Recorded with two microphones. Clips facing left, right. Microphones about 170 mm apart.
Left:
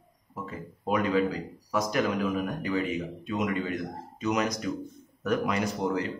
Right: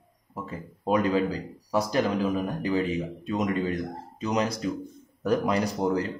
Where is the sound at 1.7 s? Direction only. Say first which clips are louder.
Right 2 dB; 30° right (ahead or behind).